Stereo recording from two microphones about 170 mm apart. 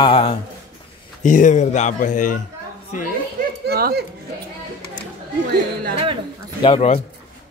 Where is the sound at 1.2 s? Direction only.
50° left (ahead or behind).